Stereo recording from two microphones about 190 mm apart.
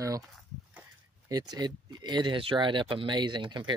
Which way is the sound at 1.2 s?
20° right (ahead or behind).